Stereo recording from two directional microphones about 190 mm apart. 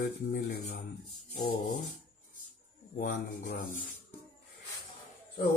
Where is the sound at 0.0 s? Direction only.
50° left (ahead or behind).